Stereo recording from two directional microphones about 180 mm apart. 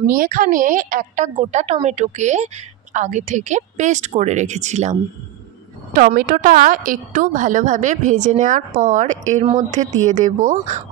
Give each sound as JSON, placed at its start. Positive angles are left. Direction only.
{"t": 0.0, "sound": "a woman's voice", "side_deg": -50}
{"t": 5.9, "sound": "a woman's voice", "side_deg": -50}